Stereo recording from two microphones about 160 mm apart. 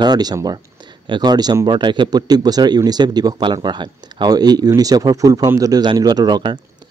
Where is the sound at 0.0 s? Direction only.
25° right (ahead or behind).